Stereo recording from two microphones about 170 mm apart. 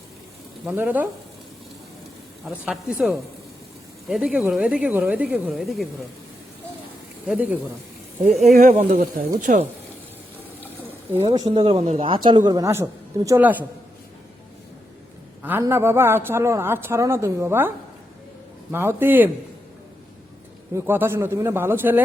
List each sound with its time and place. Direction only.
0.6 s speech: 10° right (ahead or behind)
2.6 s speech: centre (ahead or behind)
7.3 s speech: 10° right (ahead or behind)
8.4 s speech: 45° right (ahead or behind)
11.2 s speech: 35° right (ahead or behind); by 13.7 s 10° right (ahead or behind)
15.6 s speech: 15° right (ahead or behind)
18.7 s speech: 15° right (ahead or behind)
20.7 s speech: 10° right (ahead or behind)